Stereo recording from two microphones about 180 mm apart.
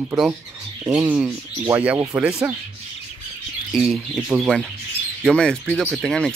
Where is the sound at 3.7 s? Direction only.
Centre (ahead or behind).